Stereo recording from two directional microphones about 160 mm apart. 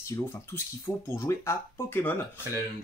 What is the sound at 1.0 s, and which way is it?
Speech, 15° left (ahead or behind).